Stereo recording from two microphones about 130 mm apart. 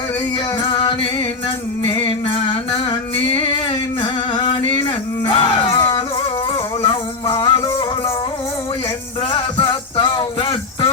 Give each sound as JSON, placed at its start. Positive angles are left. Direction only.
{"t": 0.6, "sound": "music", "side_deg": 40}
{"t": 2.0, "sound": "singing", "side_deg": 40}
{"t": 4.0, "sound": "music", "side_deg": 35}
{"t": 5.2, "sound": "a sound", "side_deg": 40}
{"t": 6.8, "sound": "music", "side_deg": 40}
{"t": 9.3, "sound": "music", "side_deg": 40}